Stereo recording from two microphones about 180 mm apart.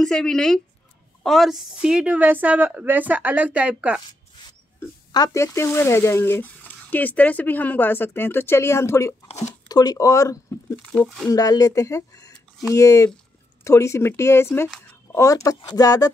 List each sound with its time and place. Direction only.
0.0 s a woman's voice: 5° left (ahead or behind)
4.5 s speech: 20° left (ahead or behind)
11.0 s speech: centre (ahead or behind)
11.2 s speech: 20° left (ahead or behind)